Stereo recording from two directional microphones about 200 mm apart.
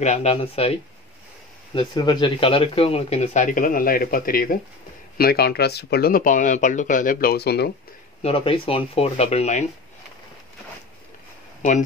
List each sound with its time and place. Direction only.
0.0 s speech: 35° left (ahead or behind)
1.8 s speech: 20° left (ahead or behind); by 7.7 s 55° left (ahead or behind)
8.2 s speech: 30° left (ahead or behind)